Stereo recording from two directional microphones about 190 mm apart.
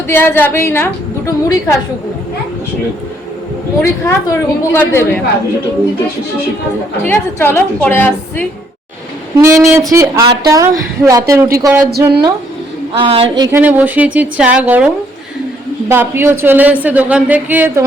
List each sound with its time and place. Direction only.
0.1 s a woman's voice: 10° left (ahead or behind)
3.8 s a woman's voice: 15° left (ahead or behind)
7.0 s a woman's voice: 10° left (ahead or behind)
9.4 s speech: 15° right (ahead or behind)
11.9 s speech: 55° right (ahead or behind)
12.9 s speech: 30° right (ahead or behind)
13.3 s speech: 20° right (ahead or behind)
13.6 s speech: 10° right (ahead or behind)
15.9 s speech: 10° right (ahead or behind)